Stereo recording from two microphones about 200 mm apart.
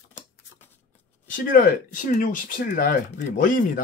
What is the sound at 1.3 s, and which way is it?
Speech, 45° left (ahead or behind).